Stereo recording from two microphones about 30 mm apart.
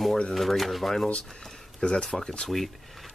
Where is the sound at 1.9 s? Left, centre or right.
Left.